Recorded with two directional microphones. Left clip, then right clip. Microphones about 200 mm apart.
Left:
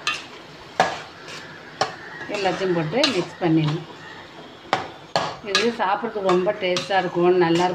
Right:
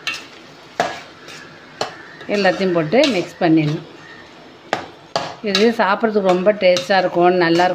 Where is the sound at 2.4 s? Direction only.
55° right (ahead or behind).